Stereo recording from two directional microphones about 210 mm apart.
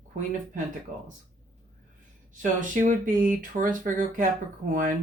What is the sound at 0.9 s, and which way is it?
Speech, 40° right (ahead or behind).